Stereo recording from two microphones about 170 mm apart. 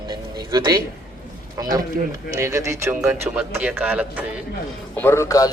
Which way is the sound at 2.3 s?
15° right (ahead or behind).